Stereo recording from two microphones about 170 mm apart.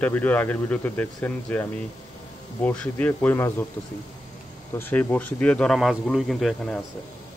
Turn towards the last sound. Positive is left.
turn(degrees=5)  # may be behind; listen again after turning